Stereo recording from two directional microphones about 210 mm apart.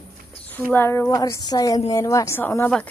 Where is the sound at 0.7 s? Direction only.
10° left (ahead or behind).